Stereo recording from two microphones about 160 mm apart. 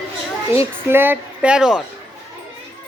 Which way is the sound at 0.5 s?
15° right (ahead or behind).